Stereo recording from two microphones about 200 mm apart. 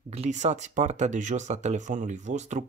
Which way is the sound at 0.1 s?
35° right (ahead or behind).